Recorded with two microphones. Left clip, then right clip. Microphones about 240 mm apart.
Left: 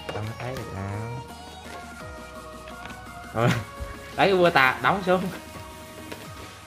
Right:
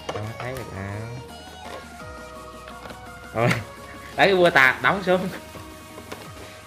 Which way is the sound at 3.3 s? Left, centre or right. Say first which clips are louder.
Right 2 dB; centre.